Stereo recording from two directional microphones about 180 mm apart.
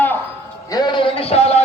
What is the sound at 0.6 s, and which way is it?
Music, 20° left (ahead or behind).